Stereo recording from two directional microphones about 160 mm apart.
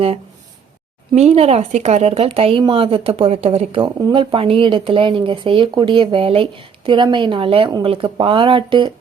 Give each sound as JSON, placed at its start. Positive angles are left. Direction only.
{"t": 1.1, "sound": "speech", "side_deg": -40}